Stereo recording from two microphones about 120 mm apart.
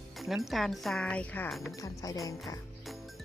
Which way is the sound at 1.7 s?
25° left (ahead or behind).